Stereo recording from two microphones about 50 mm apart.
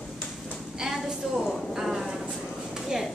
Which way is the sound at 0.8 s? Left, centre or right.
Centre.